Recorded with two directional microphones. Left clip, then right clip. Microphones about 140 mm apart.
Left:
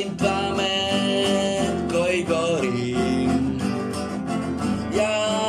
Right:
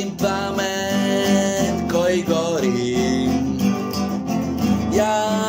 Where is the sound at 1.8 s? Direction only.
15° left (ahead or behind).